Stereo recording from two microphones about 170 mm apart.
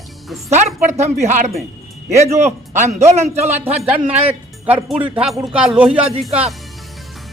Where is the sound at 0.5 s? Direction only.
45° right (ahead or behind).